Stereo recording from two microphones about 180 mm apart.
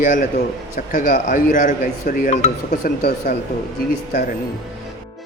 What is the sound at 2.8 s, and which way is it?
Speech, 60° left (ahead or behind).